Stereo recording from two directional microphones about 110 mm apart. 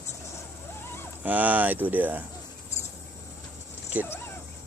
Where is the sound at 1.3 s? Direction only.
15° right (ahead or behind).